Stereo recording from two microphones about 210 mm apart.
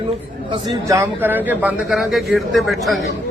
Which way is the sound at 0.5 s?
15° right (ahead or behind).